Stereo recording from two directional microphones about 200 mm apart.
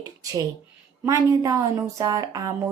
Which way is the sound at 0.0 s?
15° right (ahead or behind).